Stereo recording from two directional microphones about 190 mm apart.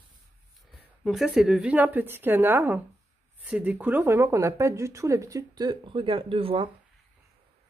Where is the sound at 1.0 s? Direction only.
Centre (ahead or behind); by 6.7 s 30° right (ahead or behind).